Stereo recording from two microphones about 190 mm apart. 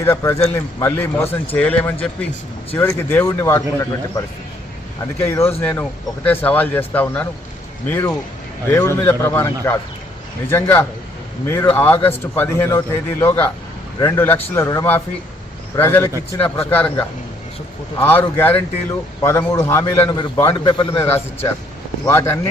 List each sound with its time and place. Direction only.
0.0 s a man's voice: 15° left (ahead or behind)
5.5 s a man's voice: 10° left (ahead or behind); by 21.0 s 25° left (ahead or behind)
21.0 s a man's voice: 15° left (ahead or behind)